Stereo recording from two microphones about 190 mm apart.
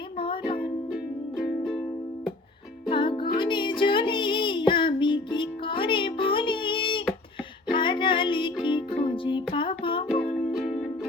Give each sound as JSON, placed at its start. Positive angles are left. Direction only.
{"t": 0.2, "sound": "music", "side_deg": 25}
{"t": 2.9, "sound": "music", "side_deg": 25}
{"t": 10.3, "sound": "music", "side_deg": 0}